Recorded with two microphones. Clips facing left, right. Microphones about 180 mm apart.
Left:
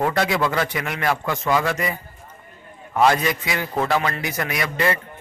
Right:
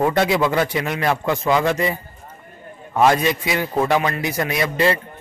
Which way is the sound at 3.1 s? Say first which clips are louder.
Right 3 dB; 20° right (ahead or behind).